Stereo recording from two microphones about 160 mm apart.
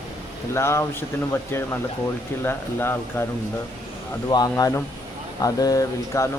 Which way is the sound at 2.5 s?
15° left (ahead or behind).